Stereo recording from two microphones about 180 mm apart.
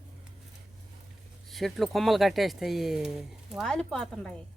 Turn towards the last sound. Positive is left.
turn(degrees=5)  # may be behind; listen again after turning